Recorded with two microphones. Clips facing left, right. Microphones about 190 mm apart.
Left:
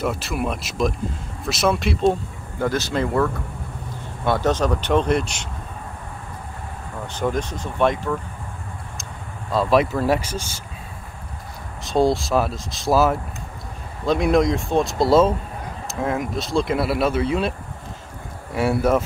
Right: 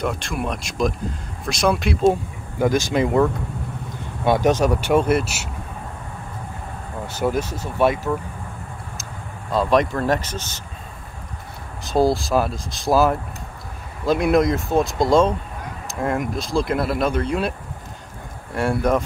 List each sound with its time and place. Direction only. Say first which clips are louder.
0.0 s speech: left 1 dB; 5° left (ahead or behind)
2.6 s speech: right 3 dB; 15° right (ahead or behind)
7.1 s speech: right 2 dB; 5° right (ahead or behind)
9.5 s speech: even; centre (ahead or behind)
11.8 s speech: even; centre (ahead or behind)